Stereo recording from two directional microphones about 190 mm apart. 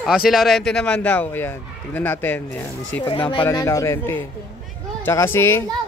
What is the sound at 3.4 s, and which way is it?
Speech, 15° left (ahead or behind).